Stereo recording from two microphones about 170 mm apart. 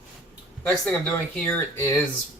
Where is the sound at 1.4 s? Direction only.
5° left (ahead or behind).